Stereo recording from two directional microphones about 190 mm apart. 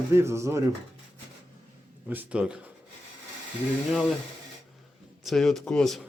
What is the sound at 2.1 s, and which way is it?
Speech, 10° right (ahead or behind).